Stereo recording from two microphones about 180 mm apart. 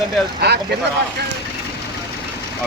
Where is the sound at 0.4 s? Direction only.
65° right (ahead or behind).